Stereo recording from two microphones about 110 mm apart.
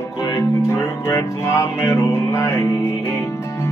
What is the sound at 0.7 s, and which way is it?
Music, 25° left (ahead or behind).